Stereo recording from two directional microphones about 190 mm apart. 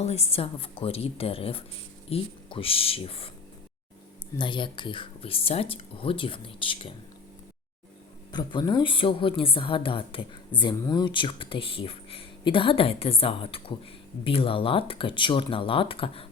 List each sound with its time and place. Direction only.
0.0 s a woman's voice: 35° left (ahead or behind)
4.4 s a woman's voice: 25° left (ahead or behind)
8.3 s a woman's voice: 25° left (ahead or behind)